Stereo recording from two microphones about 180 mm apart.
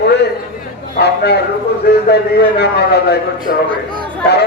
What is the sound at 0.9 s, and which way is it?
Speech, 65° left (ahead or behind).